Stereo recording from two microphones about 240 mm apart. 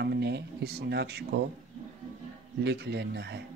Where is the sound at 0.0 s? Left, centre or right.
Right.